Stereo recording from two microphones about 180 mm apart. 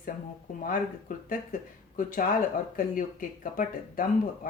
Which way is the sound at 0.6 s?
50° left (ahead or behind).